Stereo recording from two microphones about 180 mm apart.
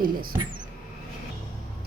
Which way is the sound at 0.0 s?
55° right (ahead or behind).